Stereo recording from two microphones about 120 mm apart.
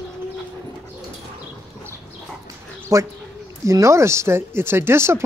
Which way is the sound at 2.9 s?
25° right (ahead or behind).